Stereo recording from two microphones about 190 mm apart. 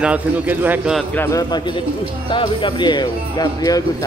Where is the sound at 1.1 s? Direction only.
10° left (ahead or behind).